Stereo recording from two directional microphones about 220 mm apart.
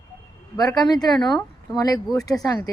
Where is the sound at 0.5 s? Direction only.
20° left (ahead or behind).